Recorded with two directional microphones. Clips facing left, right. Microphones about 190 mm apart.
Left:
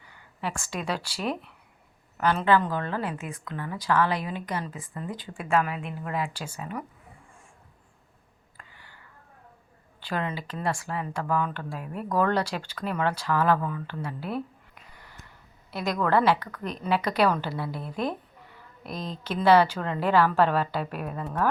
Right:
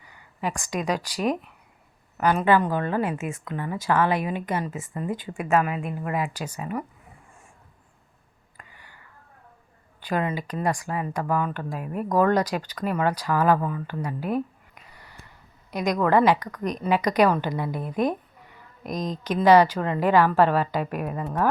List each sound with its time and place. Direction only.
0.4 s a woman's voice: 15° right (ahead or behind)
5.8 s a woman's voice: 45° right (ahead or behind)
6.1 s a woman's voice: 10° right (ahead or behind)
10.1 s a woman's voice: 10° right (ahead or behind)
15.7 s a woman's voice: 15° right (ahead or behind)
18.8 s speech: 40° right (ahead or behind)
19.2 s a woman's voice: 15° right (ahead or behind)